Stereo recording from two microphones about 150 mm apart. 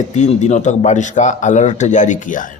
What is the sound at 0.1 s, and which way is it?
Speech, 50° left (ahead or behind).